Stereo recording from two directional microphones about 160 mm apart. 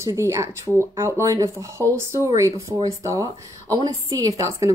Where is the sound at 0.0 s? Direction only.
20° right (ahead or behind).